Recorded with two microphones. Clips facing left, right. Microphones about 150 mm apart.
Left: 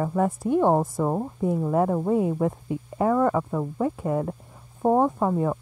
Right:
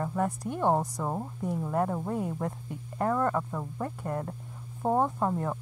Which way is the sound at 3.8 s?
5° left (ahead or behind).